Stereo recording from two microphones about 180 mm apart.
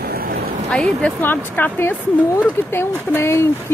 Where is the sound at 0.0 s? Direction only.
55° right (ahead or behind).